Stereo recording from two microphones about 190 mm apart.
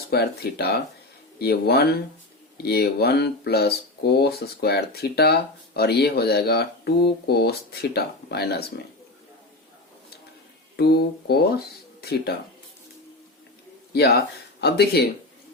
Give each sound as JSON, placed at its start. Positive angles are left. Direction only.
{"t": 0.1, "sound": "speech", "side_deg": 55}
{"t": 10.8, "sound": "speech", "side_deg": 55}
{"t": 13.9, "sound": "speech", "side_deg": 60}